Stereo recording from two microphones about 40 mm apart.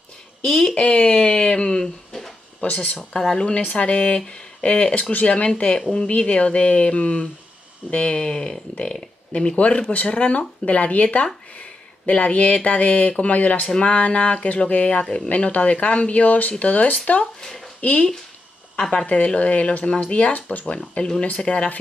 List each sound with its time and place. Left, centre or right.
0.5 s speech: centre
0.7 s a sound: left
2.6 s speech: left
3.1 s speech: centre
3.7 s speech: left
13.7 s speech: left
18.8 s speech: centre
19.0 s speech: left